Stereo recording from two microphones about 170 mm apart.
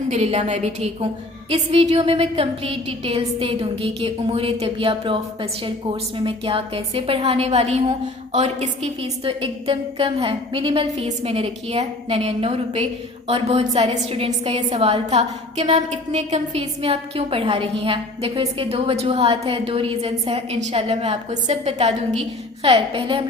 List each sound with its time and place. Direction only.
0.1 s a woman's voice: 40° right (ahead or behind)